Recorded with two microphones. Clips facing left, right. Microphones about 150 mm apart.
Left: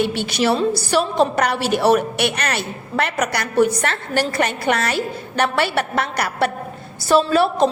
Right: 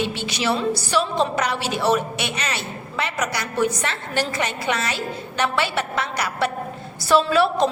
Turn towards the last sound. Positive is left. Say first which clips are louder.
# left 2 dB
turn(degrees=40)  # may be behind; listen again after turning